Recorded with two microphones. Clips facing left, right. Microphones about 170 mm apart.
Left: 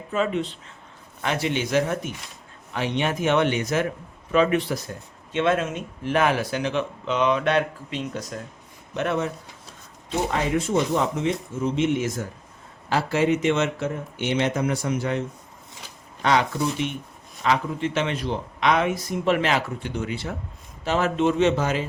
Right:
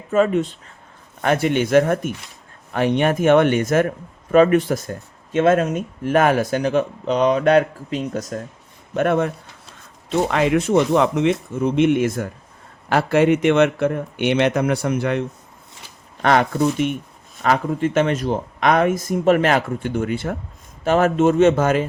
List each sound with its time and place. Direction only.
0.1 s speech: 45° right (ahead or behind)
10.1 s a man's voice: 75° right (ahead or behind)
16.2 s speech: 55° right (ahead or behind)